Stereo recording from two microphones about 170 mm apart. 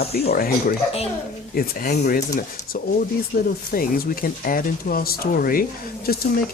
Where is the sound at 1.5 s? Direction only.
60° left (ahead or behind).